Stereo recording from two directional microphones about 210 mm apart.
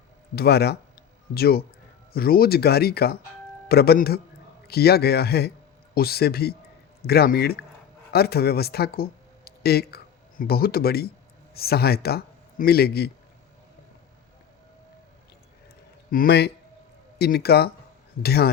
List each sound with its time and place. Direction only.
0.3 s a man's voice: 50° left (ahead or behind)
16.1 s speech: 50° left (ahead or behind)